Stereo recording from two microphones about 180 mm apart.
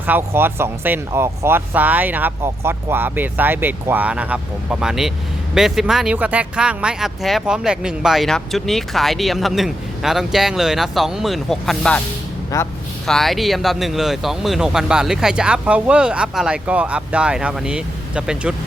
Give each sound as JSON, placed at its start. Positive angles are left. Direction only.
{"t": 0.0, "sound": "speech", "side_deg": -10}
{"t": 12.5, "sound": "a man's voice", "side_deg": 20}
{"t": 13.1, "sound": "speech", "side_deg": 0}